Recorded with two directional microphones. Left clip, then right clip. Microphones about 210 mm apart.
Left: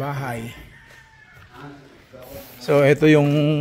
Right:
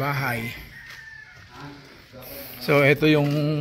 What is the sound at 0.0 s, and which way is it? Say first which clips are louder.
Speech: right 2 dB; 10° left (ahead or behind).